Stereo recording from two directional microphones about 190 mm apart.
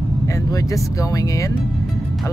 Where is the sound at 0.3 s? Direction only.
15° left (ahead or behind).